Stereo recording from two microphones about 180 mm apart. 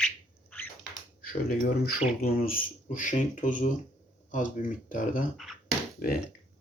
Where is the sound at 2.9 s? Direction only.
45° left (ahead or behind).